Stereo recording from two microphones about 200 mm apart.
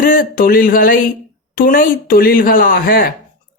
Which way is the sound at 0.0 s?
45° left (ahead or behind).